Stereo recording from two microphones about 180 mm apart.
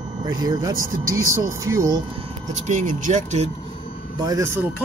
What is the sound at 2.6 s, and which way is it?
Speech, 45° right (ahead or behind).